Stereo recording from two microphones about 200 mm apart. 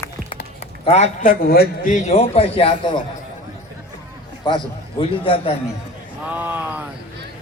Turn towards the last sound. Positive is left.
turn(degrees=-10)  # may be behind; listen again after turning